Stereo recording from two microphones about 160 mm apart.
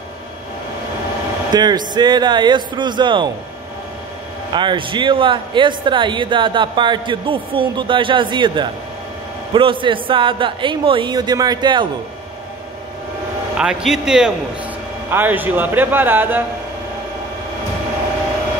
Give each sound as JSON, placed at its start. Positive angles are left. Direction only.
{"t": 1.5, "sound": "speech", "side_deg": -25}
{"t": 4.6, "sound": "speech", "side_deg": -30}
{"t": 13.6, "sound": "a man's voice", "side_deg": -5}